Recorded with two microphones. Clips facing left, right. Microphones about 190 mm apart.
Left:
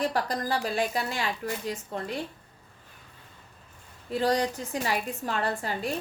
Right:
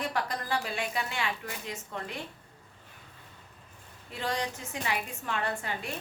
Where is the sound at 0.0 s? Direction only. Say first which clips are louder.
Left 5 dB; 35° left (ahead or behind).